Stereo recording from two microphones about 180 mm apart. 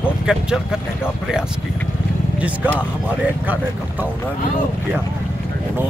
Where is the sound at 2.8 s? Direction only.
10° right (ahead or behind).